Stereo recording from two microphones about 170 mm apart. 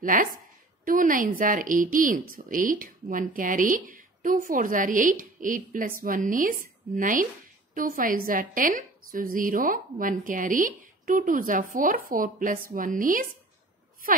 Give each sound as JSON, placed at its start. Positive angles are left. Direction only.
{"t": 0.0, "sound": "speech", "side_deg": -50}